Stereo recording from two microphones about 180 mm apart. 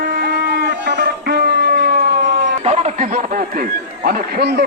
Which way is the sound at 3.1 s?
50° right (ahead or behind).